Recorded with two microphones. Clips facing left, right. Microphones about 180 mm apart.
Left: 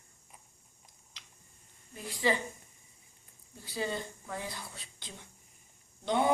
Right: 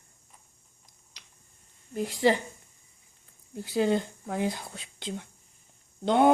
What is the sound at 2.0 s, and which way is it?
Speech, 65° right (ahead or behind).